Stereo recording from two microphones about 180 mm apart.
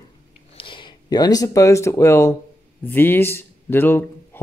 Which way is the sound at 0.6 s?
30° left (ahead or behind).